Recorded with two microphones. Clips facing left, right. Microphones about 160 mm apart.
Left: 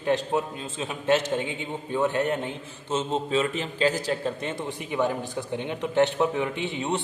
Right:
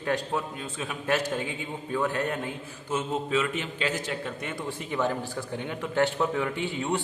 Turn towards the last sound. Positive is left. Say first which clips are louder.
# left 1 dB
turn(degrees=20)  # may be behind; listen again after turning